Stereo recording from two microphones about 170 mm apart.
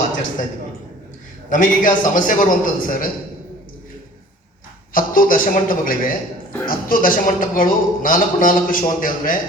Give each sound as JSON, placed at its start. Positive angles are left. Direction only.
{"t": 1.5, "sound": "a man's voice", "side_deg": 50}
{"t": 4.9, "sound": "a man's voice", "side_deg": 55}